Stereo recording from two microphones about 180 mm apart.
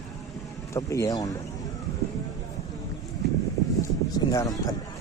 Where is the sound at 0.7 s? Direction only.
15° left (ahead or behind).